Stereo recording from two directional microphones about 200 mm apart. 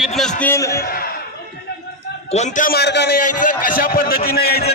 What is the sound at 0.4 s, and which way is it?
Speech, 15° left (ahead or behind).